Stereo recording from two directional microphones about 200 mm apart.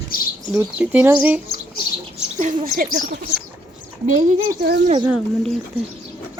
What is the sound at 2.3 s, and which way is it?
Speech, 40° right (ahead or behind).